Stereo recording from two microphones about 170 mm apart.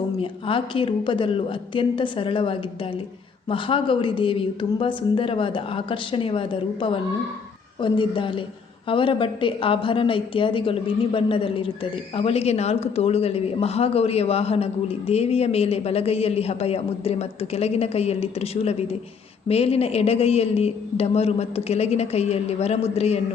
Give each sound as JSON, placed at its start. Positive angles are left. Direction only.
{"t": 0.2, "sound": "a woman's voice", "side_deg": 30}